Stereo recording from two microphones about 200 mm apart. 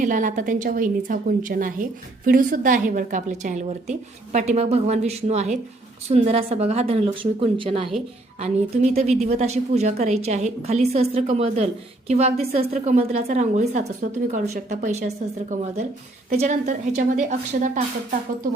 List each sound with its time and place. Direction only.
0.0 s a woman's voice: 40° right (ahead or behind)